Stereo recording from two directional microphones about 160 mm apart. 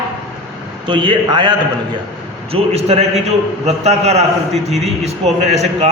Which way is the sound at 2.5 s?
40° right (ahead or behind).